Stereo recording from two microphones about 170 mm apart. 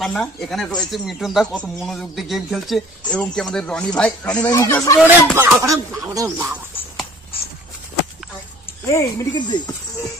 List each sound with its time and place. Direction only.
0.0 s speech: centre (ahead or behind)
4.9 s speech: 10° right (ahead or behind)
8.8 s speech: 20° left (ahead or behind)